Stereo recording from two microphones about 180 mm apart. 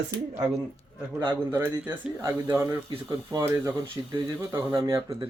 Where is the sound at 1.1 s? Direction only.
20° right (ahead or behind).